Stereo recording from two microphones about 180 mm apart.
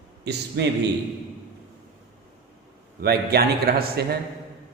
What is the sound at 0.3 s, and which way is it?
Speech, 70° right (ahead or behind).